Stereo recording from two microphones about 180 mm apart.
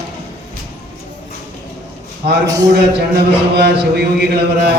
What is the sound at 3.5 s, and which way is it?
A man's voice, 65° right (ahead or behind).